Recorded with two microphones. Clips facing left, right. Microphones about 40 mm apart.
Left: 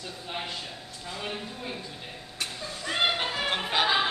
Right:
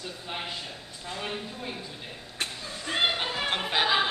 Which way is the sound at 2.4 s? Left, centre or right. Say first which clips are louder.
Even; right.